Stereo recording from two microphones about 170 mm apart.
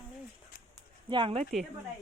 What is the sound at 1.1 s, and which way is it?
Speech, 30° right (ahead or behind).